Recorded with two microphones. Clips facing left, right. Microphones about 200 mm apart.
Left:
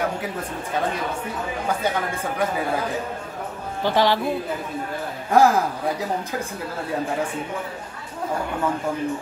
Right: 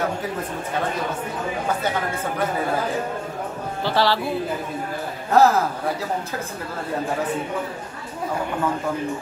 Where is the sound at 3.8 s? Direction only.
15° left (ahead or behind).